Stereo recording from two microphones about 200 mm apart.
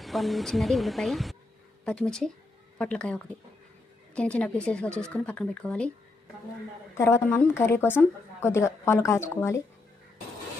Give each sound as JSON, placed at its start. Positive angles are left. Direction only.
{"t": 0.0, "sound": "speech", "side_deg": 0}
{"t": 7.0, "sound": "a woman's voice", "side_deg": 15}